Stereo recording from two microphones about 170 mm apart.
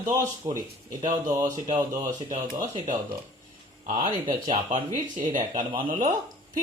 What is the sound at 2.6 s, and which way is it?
Speech, 50° right (ahead or behind).